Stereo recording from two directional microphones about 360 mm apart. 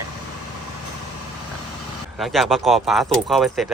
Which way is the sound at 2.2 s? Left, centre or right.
Centre.